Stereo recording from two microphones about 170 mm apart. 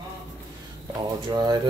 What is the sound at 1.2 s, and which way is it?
Speech, 25° right (ahead or behind).